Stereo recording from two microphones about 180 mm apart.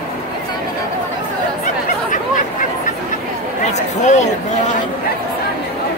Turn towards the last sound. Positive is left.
turn(degrees=40)  # may be behind; listen again after turning